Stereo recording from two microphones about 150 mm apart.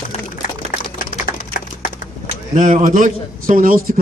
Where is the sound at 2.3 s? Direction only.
50° right (ahead or behind); by 3.9 s 65° right (ahead or behind).